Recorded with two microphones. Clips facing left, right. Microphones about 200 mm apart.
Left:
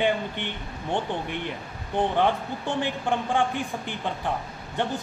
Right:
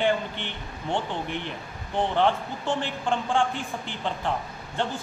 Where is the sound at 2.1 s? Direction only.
15° left (ahead or behind).